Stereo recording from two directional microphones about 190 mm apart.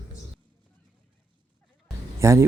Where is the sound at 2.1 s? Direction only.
15° right (ahead or behind).